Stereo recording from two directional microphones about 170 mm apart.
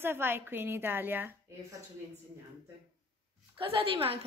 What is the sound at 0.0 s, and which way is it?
A woman's voice, 10° right (ahead or behind).